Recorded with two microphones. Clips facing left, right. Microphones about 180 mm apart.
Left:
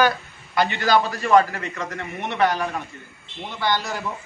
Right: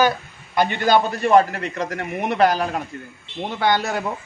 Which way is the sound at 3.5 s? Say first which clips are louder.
Right 4 dB; 55° right (ahead or behind).